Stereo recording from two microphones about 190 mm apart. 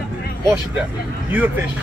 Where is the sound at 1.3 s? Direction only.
10° right (ahead or behind).